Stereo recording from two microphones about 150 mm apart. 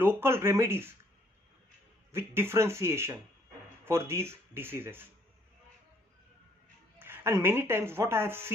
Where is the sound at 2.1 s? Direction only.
15° right (ahead or behind).